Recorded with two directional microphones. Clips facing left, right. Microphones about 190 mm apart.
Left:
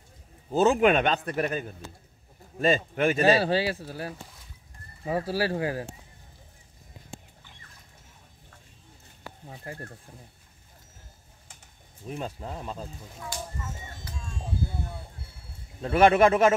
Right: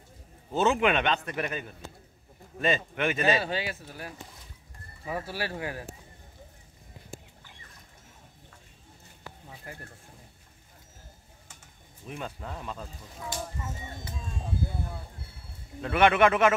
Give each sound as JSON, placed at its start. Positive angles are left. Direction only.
{"t": 0.5, "sound": "speech", "side_deg": 40}
{"t": 9.5, "sound": "speech", "side_deg": 30}
{"t": 12.1, "sound": "speech", "side_deg": 30}
{"t": 15.8, "sound": "speech", "side_deg": 35}